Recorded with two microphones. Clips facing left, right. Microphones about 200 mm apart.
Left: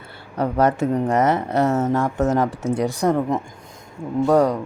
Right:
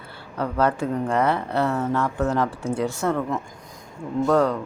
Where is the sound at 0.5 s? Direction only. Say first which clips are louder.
Left 3 dB; 20° left (ahead or behind).